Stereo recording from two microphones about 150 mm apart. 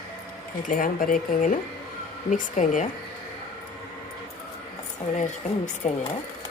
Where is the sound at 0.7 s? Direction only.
70° left (ahead or behind).